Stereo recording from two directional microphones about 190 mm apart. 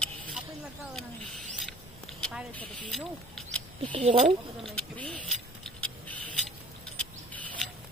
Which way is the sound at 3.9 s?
30° right (ahead or behind).